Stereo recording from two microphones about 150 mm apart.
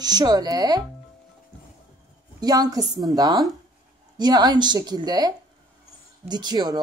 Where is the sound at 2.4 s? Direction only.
25° right (ahead or behind).